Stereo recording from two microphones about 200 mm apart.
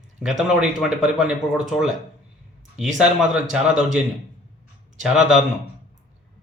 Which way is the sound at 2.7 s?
5° right (ahead or behind).